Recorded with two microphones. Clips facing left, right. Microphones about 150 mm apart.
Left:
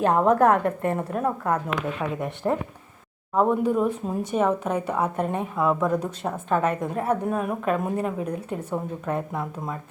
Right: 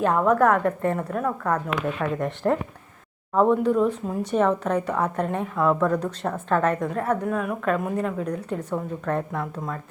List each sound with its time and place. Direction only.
0.0 s a woman's voice: 25° left (ahead or behind)
2.0 s a woman's voice: 10° left (ahead or behind)
6.7 s a woman's voice: 20° left (ahead or behind)